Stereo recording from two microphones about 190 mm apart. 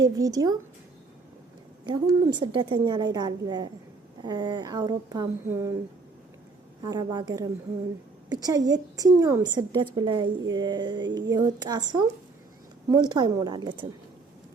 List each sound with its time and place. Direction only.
0.0 s a woman's voice: 20° right (ahead or behind)
1.8 s a woman's voice: 20° right (ahead or behind)
6.8 s a woman's voice: 20° right (ahead or behind)